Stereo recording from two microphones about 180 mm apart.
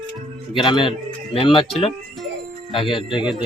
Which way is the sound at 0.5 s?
25° left (ahead or behind).